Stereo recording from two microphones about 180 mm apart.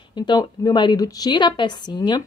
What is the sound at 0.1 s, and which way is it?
A woman's voice, 25° left (ahead or behind).